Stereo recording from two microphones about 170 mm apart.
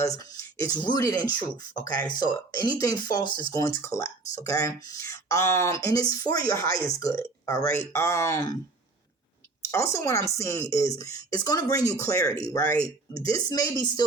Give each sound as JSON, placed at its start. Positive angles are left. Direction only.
{"t": 0.6, "sound": "speech", "side_deg": 20}
{"t": 9.7, "sound": "speech", "side_deg": 15}